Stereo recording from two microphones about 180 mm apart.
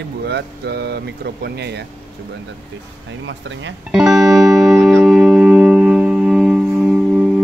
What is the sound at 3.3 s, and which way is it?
Speech, 90° right.